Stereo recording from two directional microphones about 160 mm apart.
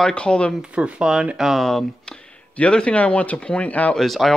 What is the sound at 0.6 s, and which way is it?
Speech, 5° right (ahead or behind).